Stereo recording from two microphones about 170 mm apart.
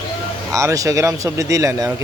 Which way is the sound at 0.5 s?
20° right (ahead or behind).